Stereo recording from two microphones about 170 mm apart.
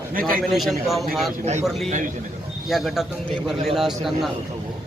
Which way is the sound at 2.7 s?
Centre (ahead or behind).